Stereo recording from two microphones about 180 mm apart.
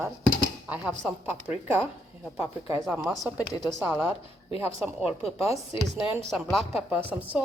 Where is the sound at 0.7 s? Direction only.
10° right (ahead or behind).